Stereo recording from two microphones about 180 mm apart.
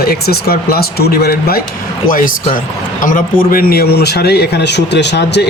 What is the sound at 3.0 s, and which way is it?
Speech, 50° left (ahead or behind).